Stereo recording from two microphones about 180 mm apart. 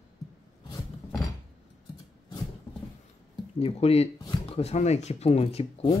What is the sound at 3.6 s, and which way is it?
Speech, 35° left (ahead or behind).